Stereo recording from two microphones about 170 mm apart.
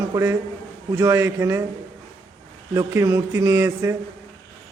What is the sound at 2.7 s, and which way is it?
A man's voice, 20° right (ahead or behind).